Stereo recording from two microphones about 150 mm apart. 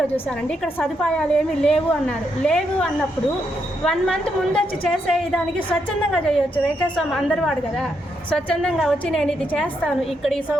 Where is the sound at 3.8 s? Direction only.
5° left (ahead or behind).